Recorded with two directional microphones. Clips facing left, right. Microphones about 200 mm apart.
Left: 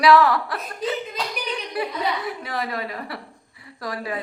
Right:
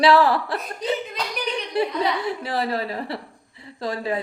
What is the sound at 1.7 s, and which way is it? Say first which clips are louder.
A woman's voice: right 4 dB; 25° right (ahead or behind).